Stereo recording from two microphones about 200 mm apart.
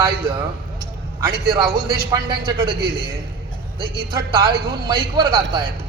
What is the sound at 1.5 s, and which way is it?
A man's voice, 20° right (ahead or behind).